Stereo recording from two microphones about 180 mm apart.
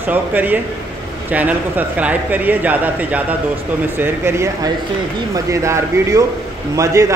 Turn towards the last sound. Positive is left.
turn(degrees=-20)  # may be behind; listen again after turning